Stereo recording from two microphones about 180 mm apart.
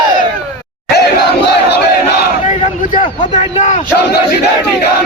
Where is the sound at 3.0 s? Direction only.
30° left (ahead or behind).